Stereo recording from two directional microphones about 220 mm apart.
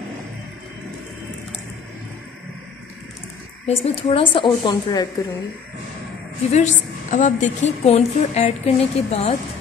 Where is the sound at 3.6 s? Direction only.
25° left (ahead or behind).